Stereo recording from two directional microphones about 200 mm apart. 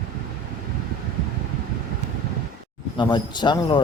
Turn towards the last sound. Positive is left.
turn(degrees=20)  # may be behind; listen again after turning